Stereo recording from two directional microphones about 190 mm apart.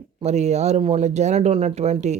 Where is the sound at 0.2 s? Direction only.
35° right (ahead or behind).